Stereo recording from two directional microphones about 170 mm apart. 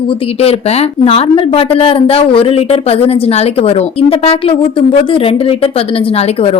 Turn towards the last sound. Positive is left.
turn(degrees=35)  # may be behind; listen again after turning